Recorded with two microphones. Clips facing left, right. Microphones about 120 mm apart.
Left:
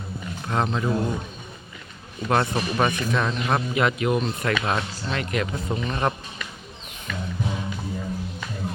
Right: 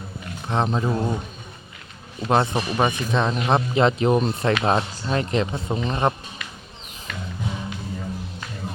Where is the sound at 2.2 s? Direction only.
20° right (ahead or behind).